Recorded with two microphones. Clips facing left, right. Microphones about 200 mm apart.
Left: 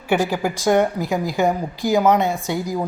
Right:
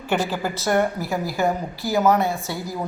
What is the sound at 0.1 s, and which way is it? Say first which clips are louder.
A woman's voice: left 4 dB; 10° left (ahead or behind).